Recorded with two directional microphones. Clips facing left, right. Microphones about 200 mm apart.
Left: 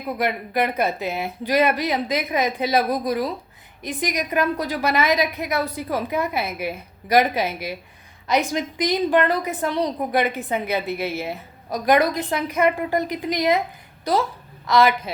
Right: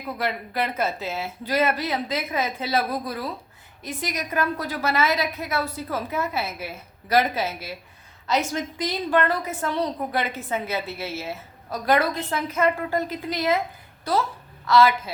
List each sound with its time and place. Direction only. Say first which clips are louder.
0.2 s a woman's voice: left 4 dB; 15° left (ahead or behind)